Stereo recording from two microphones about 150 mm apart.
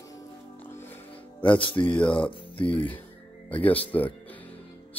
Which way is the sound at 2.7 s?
10° left (ahead or behind).